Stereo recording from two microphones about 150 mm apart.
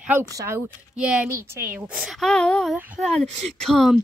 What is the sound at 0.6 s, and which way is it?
A woman's voice, 5° right (ahead or behind).